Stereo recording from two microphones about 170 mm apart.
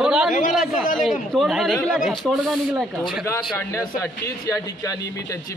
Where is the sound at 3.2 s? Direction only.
15° left (ahead or behind).